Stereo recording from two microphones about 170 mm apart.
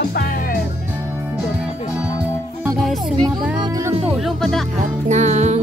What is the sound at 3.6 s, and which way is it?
Music, 20° right (ahead or behind).